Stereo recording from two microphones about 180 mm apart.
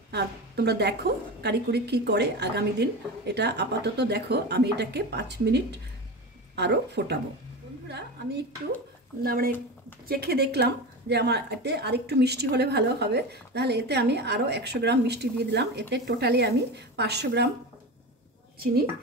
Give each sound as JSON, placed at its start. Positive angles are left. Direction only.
{"t": 0.1, "sound": "a woman's voice", "side_deg": -65}
{"t": 9.2, "sound": "a woman's voice", "side_deg": -55}